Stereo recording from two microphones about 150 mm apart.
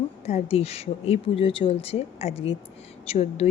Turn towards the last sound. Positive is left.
turn(degrees=45)  # may be behind; listen again after turning